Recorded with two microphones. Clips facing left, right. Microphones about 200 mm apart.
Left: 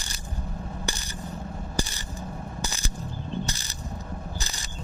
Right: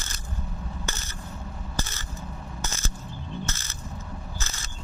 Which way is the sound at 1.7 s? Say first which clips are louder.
Left 4 dB; 15° left (ahead or behind).